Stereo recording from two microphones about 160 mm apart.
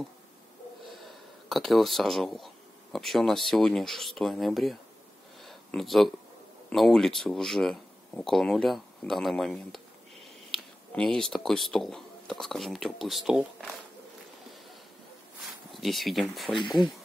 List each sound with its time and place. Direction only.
0.8 s speech: centre (ahead or behind)
5.4 s a sound: centre (ahead or behind)
6.7 s speech: centre (ahead or behind)
15.7 s speech: centre (ahead or behind)
16.5 s speech: 30° left (ahead or behind)